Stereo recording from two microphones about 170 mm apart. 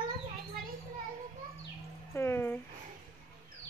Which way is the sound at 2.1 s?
15° left (ahead or behind).